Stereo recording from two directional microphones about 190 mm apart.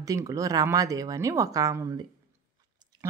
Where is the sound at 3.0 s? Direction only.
15° right (ahead or behind).